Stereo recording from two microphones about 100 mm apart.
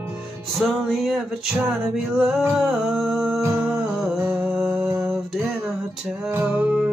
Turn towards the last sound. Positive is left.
turn(degrees=-20)  # may be behind; listen again after turning